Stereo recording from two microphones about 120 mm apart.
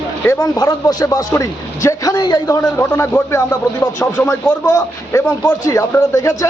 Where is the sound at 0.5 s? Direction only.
35° left (ahead or behind); by 4.5 s 15° left (ahead or behind).